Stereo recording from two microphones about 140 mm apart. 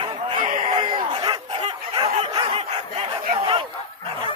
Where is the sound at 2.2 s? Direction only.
35° right (ahead or behind).